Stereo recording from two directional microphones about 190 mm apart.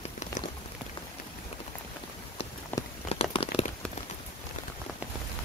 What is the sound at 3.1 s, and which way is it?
Crumpling, 30° left (ahead or behind).